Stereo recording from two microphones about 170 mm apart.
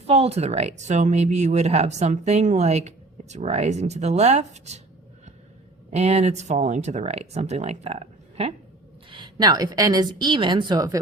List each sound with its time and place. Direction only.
0.1 s speech: 35° right (ahead or behind)
5.9 s a woman's voice: 40° right (ahead or behind); by 11.0 s 20° right (ahead or behind)